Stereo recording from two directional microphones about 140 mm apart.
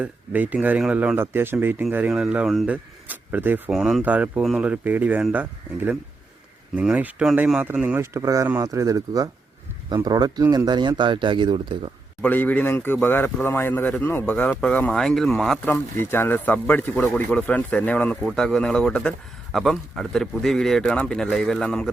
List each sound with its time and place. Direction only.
0.0 s speech: 10° right (ahead or behind); by 11.9 s 35° right (ahead or behind)
12.2 s speech: 10° left (ahead or behind)
16.1 s speech: 15° left (ahead or behind)